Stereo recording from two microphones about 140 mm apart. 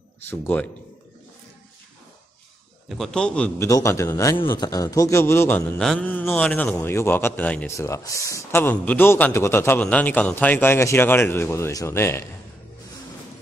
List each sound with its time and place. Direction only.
0.2 s a man's voice: 15° left (ahead or behind)
2.9 s a man's voice: 5° left (ahead or behind)
3.5 s a man's voice: 20° left (ahead or behind)